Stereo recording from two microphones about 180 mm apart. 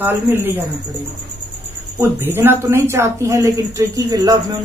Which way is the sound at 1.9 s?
15° right (ahead or behind).